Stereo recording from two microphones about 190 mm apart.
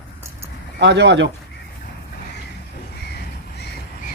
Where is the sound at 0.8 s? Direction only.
65° right (ahead or behind).